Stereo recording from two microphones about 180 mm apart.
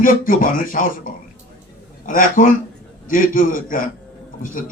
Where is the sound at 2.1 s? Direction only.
50° left (ahead or behind).